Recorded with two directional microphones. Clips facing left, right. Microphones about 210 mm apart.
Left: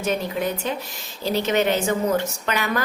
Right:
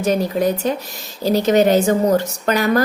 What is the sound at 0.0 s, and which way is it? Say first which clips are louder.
A woman's voice: right 7 dB; 40° right (ahead or behind).